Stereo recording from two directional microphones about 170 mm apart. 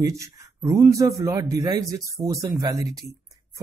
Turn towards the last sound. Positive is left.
turn(degrees=-20)  # may be behind; listen again after turning